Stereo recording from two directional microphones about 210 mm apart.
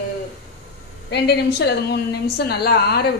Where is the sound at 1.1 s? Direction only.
55° left (ahead or behind).